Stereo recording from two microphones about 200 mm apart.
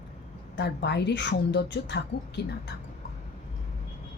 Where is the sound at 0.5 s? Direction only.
60° left (ahead or behind).